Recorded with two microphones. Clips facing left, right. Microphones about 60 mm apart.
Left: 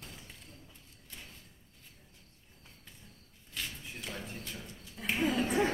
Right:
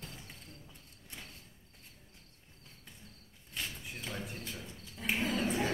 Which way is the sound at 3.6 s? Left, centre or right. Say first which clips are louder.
Even; centre.